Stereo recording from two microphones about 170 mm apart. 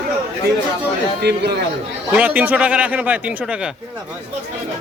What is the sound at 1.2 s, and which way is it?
Speech, 75° right (ahead or behind).